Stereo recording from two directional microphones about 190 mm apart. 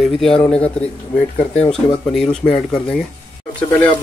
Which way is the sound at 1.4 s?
35° left (ahead or behind).